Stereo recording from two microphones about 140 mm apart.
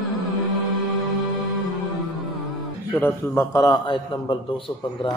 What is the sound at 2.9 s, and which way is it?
A man's voice, 15° left (ahead or behind).